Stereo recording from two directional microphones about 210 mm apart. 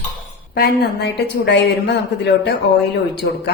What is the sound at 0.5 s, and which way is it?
A woman's voice, 45° left (ahead or behind).